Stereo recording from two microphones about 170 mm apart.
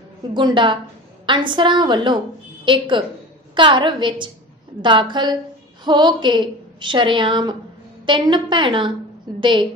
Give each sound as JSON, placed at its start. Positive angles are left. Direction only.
{"t": 0.3, "sound": "a woman's voice", "side_deg": -25}